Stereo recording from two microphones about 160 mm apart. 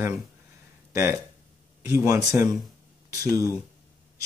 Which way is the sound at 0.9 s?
15° right (ahead or behind).